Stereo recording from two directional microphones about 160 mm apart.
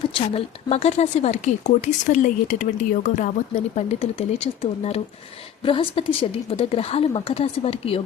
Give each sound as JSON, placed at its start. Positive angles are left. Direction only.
{"t": 0.1, "sound": "a woman's voice", "side_deg": 35}